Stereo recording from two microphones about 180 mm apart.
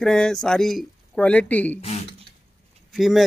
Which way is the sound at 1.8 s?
35° left (ahead or behind).